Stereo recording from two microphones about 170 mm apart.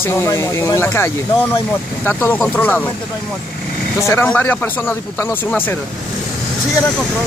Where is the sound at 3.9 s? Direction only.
15° left (ahead or behind).